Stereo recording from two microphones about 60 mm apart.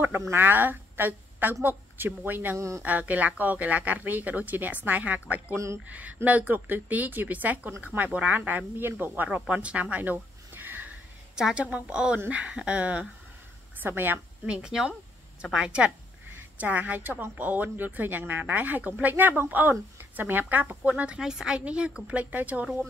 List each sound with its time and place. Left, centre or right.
0.3 s a woman's voice: right
2.5 s speech: right
2.8 s speech: right
11.3 s a woman's voice: centre
13.7 s a woman's voice: right
14.4 s a woman's voice: centre
16.5 s speech: right
21.2 s a woman's voice: centre; by 22.7 s right